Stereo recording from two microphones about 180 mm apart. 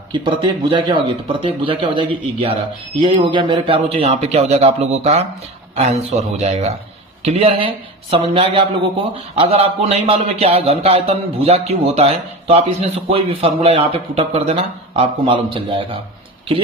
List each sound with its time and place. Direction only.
0.1 s a man's voice: 25° right (ahead or behind)